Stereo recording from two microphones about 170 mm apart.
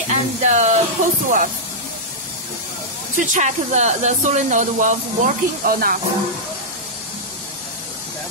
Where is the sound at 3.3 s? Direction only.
45° right (ahead or behind).